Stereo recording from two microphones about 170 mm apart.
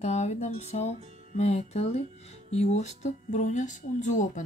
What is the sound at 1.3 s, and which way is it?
Speech, 40° left (ahead or behind).